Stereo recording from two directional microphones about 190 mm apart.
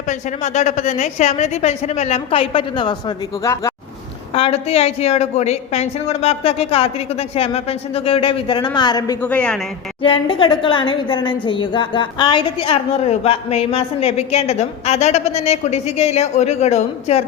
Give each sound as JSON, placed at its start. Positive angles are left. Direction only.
{"t": 0.1, "sound": "a woman's voice", "side_deg": 40}
{"t": 3.4, "sound": "speech", "side_deg": 15}
{"t": 4.4, "sound": "a woman's voice", "side_deg": 30}
{"t": 9.2, "sound": "speech", "side_deg": 5}
{"t": 10.0, "sound": "a woman's voice", "side_deg": 25}